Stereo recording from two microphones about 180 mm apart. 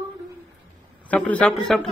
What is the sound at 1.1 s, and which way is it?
Speech, 5° left (ahead or behind).